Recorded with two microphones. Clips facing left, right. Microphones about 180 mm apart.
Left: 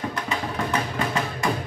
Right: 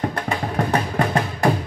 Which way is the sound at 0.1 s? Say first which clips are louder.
Right 4 dB; 50° right (ahead or behind).